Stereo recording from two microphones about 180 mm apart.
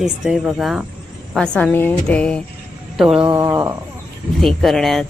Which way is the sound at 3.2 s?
15° right (ahead or behind).